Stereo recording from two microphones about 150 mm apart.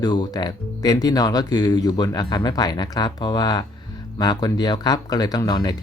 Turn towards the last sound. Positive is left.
turn(degrees=25)  # may be behind; listen again after turning